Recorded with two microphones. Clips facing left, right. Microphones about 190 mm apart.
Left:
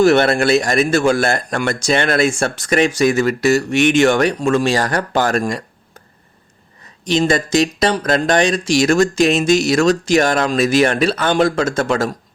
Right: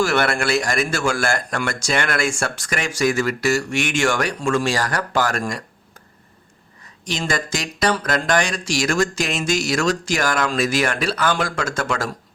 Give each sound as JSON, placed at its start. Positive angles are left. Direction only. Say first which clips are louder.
{"t": 0.0, "sound": "speech", "louder": "left 7 dB", "side_deg": 20}
{"t": 7.0, "sound": "speech", "louder": "left 9 dB", "side_deg": 20}